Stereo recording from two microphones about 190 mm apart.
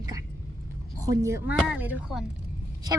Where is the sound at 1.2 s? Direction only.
10° right (ahead or behind).